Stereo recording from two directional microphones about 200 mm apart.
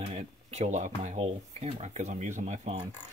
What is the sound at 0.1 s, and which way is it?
Speech, 35° right (ahead or behind).